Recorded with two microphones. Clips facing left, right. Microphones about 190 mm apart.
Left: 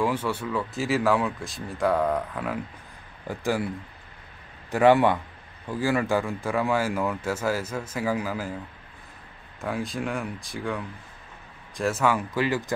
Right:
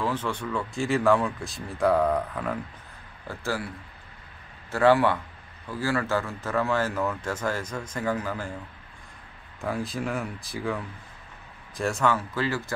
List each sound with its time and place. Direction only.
0.0 s speech: 10° left (ahead or behind)
3.3 s speech: 15° left (ahead or behind)
9.6 s speech: centre (ahead or behind); by 12.7 s 15° left (ahead or behind)